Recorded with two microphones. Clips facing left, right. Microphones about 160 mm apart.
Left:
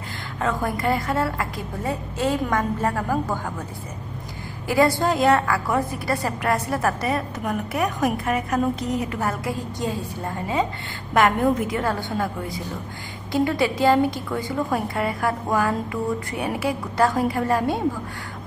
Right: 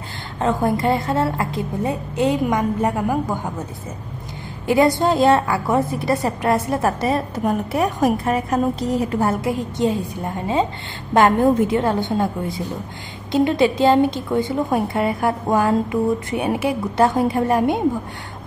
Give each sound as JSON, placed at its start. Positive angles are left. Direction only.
{"t": 0.4, "sound": "a woman's voice", "side_deg": -25}
{"t": 4.6, "sound": "a woman's voice", "side_deg": -20}